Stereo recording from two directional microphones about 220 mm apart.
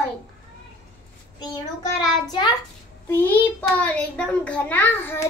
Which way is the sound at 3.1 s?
10° left (ahead or behind).